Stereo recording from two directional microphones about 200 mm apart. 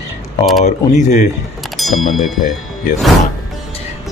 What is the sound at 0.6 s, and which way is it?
Speech, 35° left (ahead or behind).